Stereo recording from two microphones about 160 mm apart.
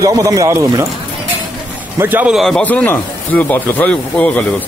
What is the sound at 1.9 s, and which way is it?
A man's voice, 10° right (ahead or behind).